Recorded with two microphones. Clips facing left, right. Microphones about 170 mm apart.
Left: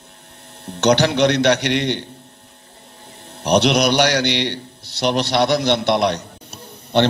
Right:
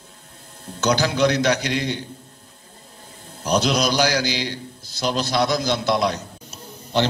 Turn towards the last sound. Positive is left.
turn(degrees=60)  # may be behind; listen again after turning